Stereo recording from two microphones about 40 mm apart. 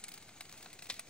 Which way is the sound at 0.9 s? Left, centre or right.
Left.